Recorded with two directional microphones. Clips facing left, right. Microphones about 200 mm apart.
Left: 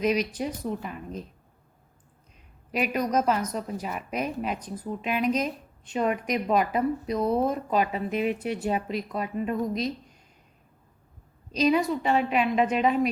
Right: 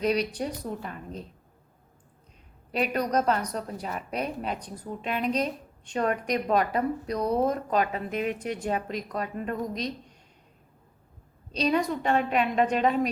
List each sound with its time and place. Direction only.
0.0 s a woman's voice: 35° right (ahead or behind)
0.3 s speech: 5° left (ahead or behind)
2.7 s a woman's voice: 5° left (ahead or behind)
11.5 s a woman's voice: 5° left (ahead or behind)